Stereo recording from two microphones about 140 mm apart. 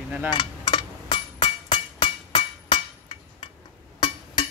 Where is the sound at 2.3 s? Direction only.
40° left (ahead or behind).